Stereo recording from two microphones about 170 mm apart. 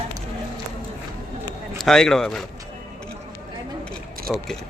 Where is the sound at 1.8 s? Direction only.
5° left (ahead or behind).